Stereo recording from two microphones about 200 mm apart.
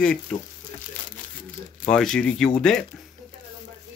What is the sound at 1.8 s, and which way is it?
Speech, 5° left (ahead or behind).